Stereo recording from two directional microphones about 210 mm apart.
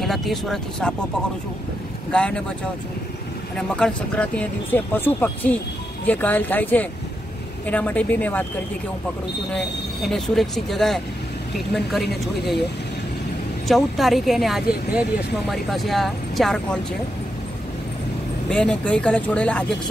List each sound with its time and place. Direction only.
0.0 s speech: centre (ahead or behind)
2.0 s speech: 5° left (ahead or behind)
3.5 s speech: 5° left (ahead or behind)
10.0 s speech: centre (ahead or behind)
13.7 s speech: centre (ahead or behind)
18.5 s speech: 5° left (ahead or behind)